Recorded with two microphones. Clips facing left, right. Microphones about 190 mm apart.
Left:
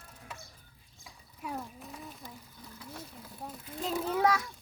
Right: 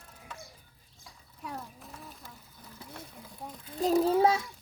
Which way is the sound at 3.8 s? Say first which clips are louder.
Right 6 dB; 40° right (ahead or behind).